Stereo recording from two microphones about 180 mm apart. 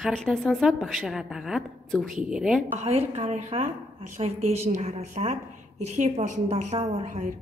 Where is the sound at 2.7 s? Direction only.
35° right (ahead or behind).